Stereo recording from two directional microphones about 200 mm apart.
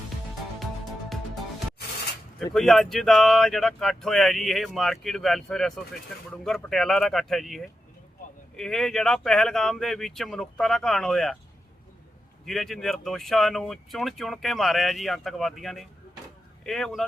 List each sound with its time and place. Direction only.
1.1 s music: centre (ahead or behind)
2.5 s speech: centre (ahead or behind)
12.5 s speech: centre (ahead or behind)